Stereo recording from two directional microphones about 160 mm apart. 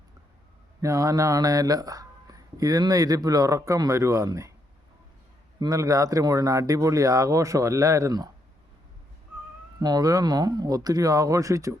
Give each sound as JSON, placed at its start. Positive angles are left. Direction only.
{"t": 0.8, "sound": "speech", "side_deg": -20}
{"t": 5.5, "sound": "speech", "side_deg": -20}
{"t": 9.8, "sound": "speech", "side_deg": -25}